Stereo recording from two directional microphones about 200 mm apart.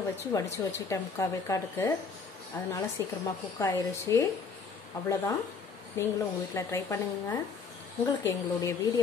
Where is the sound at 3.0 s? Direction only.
15° left (ahead or behind).